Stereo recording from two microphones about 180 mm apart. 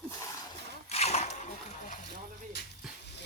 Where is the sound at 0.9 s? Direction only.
35° left (ahead or behind).